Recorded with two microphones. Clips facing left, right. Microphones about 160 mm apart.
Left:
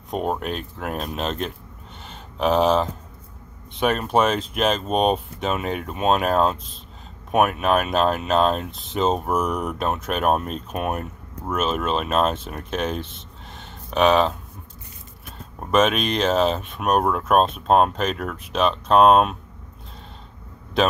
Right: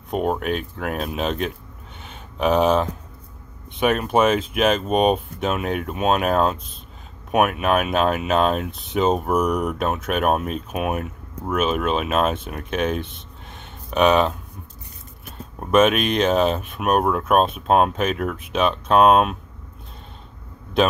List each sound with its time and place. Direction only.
0.1 s speech: centre (ahead or behind)
2.0 s a sound: centre (ahead or behind)
3.8 s speech: 5° right (ahead or behind)
13.0 s a sound: 55° right (ahead or behind)
13.8 s speech: 5° right (ahead or behind)
15.6 s speech: 5° right (ahead or behind)